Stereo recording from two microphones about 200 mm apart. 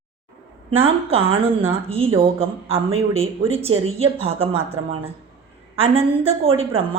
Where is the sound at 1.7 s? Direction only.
30° right (ahead or behind).